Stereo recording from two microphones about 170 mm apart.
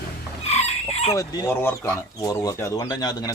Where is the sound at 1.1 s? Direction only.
20° left (ahead or behind).